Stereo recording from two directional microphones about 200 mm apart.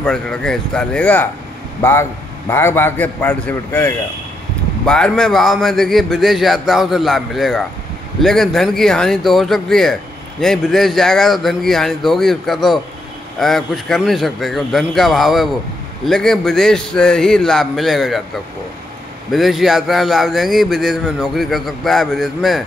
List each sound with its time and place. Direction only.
0.0 s a man's voice: 5° left (ahead or behind)
19.3 s speech: centre (ahead or behind)